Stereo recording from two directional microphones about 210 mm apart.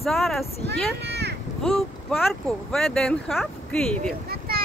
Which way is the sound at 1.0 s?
50° right (ahead or behind).